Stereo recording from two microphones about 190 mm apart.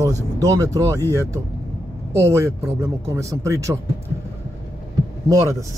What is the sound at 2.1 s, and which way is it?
A man's voice, 15° right (ahead or behind).